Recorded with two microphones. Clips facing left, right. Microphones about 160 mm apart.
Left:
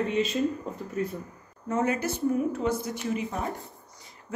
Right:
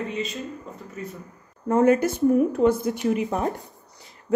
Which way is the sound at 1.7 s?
55° right (ahead or behind).